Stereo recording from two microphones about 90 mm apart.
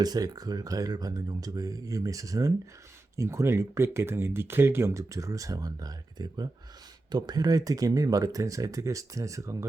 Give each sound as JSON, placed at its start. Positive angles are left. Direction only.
{"t": 0.0, "sound": "speech", "side_deg": -45}